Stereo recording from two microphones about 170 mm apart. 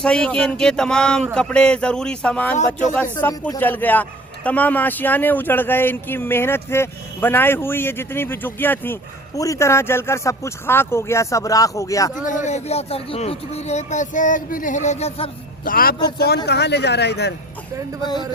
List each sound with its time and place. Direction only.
0.0 s a sound: 5° left (ahead or behind)
2.9 s speech: 10° left (ahead or behind)
12.2 s speech: 50° left (ahead or behind)
15.6 s a man's voice: 55° left (ahead or behind)
16.1 s speech: 70° left (ahead or behind)